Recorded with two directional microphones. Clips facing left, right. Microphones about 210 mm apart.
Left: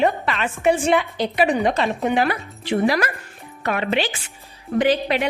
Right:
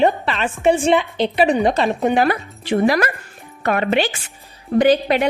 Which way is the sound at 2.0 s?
45° right (ahead or behind).